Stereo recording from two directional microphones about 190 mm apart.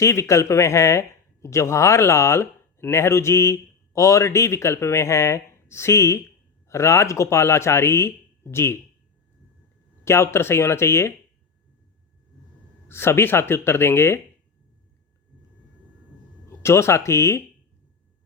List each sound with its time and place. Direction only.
0.0 s speech: 15° left (ahead or behind)
10.0 s speech: 15° left (ahead or behind)
12.9 s speech: 10° left (ahead or behind)
16.6 s speech: 15° left (ahead or behind)